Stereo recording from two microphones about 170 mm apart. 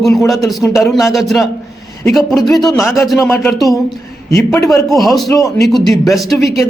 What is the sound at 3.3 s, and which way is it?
Speech, 15° left (ahead or behind).